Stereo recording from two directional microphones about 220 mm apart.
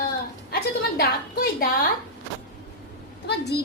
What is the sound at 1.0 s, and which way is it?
Speech, 45° left (ahead or behind).